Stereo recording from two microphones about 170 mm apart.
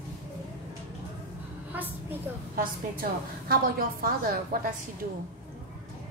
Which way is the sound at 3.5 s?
60° right (ahead or behind).